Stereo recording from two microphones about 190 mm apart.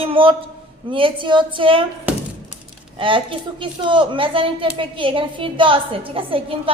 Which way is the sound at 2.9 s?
25° right (ahead or behind).